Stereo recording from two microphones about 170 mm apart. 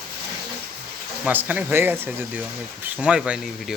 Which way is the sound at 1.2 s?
10° right (ahead or behind).